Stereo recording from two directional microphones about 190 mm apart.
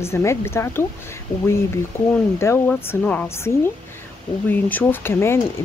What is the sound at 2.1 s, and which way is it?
Speech, 15° left (ahead or behind).